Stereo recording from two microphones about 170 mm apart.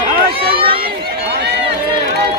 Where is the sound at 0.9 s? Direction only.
70° right (ahead or behind).